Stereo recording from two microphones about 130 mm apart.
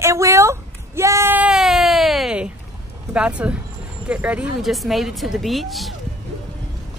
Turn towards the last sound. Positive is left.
turn(degrees=0)  # may be behind; listen again after turning